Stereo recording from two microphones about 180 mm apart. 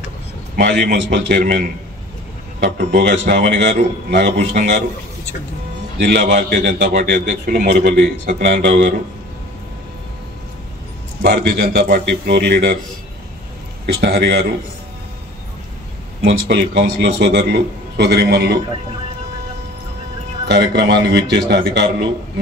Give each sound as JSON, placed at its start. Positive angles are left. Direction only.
{"t": 0.6, "sound": "a man's voice", "side_deg": -60}
{"t": 2.6, "sound": "a man's voice", "side_deg": -60}
{"t": 5.9, "sound": "a man's voice", "side_deg": -60}
{"t": 11.2, "sound": "a man's voice", "side_deg": -60}
{"t": 13.8, "sound": "a man's voice", "side_deg": -70}
{"t": 16.3, "sound": "a man's voice", "side_deg": -70}
{"t": 20.4, "sound": "a man's voice", "side_deg": -70}